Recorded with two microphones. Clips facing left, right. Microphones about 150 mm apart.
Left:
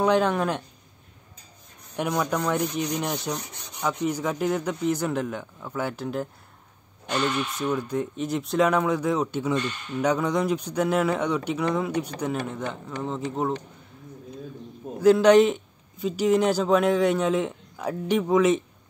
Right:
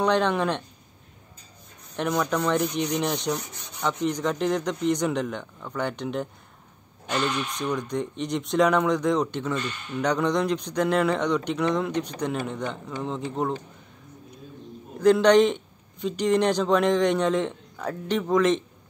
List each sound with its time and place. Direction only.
0.0 s a man's voice: 5° left (ahead or behind)
2.0 s speech: 5° left (ahead or behind)
7.5 s a man's voice: 5° left (ahead or behind)
15.0 s a man's voice: 5° left (ahead or behind)